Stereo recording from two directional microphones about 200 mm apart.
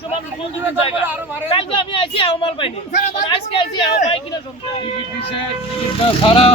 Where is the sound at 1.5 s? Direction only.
30° left (ahead or behind).